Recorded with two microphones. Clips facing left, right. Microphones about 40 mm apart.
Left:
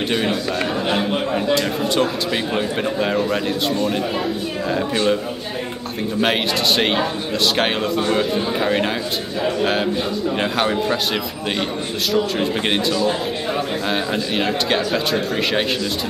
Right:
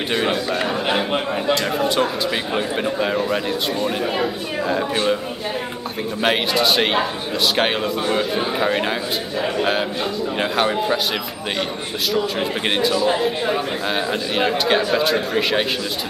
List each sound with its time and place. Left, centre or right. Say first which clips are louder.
0.1 s a man's voice: right 3 dB; centre
6.2 s a man's voice: right 2 dB; centre
12.1 s a man's voice: left 2 dB; centre